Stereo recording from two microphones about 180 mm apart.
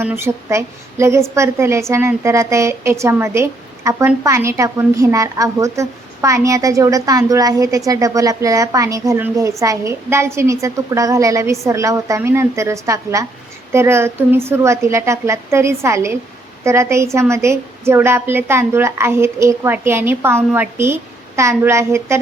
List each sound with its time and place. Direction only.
0.0 s a woman's voice: 15° right (ahead or behind)